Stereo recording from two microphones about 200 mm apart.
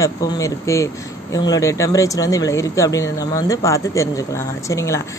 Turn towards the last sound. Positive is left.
turn(degrees=15)  # may be behind; listen again after turning